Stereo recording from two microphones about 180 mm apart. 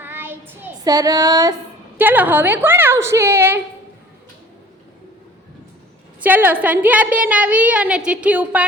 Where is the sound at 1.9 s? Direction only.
10° right (ahead or behind).